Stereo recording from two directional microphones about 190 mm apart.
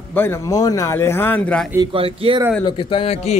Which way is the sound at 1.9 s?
30° right (ahead or behind).